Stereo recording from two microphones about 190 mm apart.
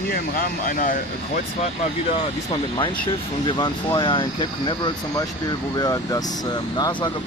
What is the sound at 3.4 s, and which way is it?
Speech, 25° left (ahead or behind).